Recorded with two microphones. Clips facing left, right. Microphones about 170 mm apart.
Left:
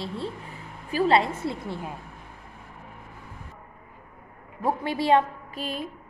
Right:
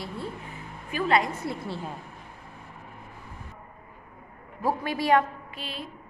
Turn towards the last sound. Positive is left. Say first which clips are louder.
# left 6 dB
turn(degrees=45)  # may be behind; listen again after turning